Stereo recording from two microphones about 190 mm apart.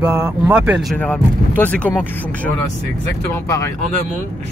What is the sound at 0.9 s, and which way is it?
Speech, 10° left (ahead or behind).